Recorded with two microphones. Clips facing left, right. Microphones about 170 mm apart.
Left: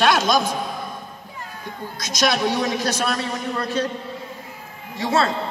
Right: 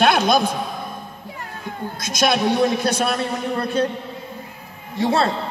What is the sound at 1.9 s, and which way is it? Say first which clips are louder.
A man's voice: right 2 dB; 55° right (ahead or behind).